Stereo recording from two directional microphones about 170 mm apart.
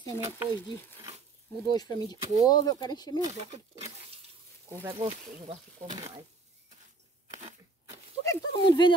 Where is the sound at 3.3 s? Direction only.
40° right (ahead or behind).